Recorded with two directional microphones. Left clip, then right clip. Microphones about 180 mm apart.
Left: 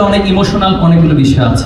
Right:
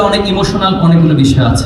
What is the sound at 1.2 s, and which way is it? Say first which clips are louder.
Speech: left 1 dB; 35° right (ahead or behind).